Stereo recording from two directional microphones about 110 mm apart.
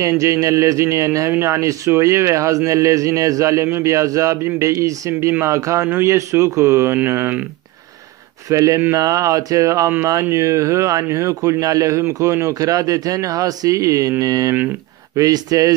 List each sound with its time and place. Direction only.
0.0 s a man's voice: 30° right (ahead or behind)
8.5 s a man's voice: 30° right (ahead or behind)